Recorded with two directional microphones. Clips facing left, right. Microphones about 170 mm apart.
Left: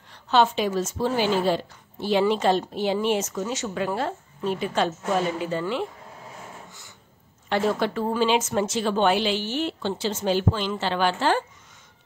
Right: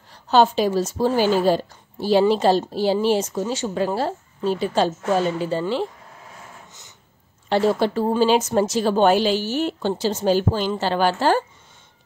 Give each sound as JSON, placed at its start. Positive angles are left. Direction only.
{"t": 0.1, "sound": "a woman's voice", "side_deg": -35}
{"t": 7.4, "sound": "a woman's voice", "side_deg": -30}